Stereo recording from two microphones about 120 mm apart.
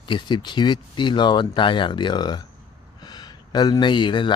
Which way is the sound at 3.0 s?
35° left (ahead or behind).